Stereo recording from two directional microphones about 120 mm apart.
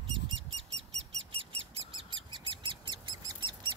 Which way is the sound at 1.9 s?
45° right (ahead or behind).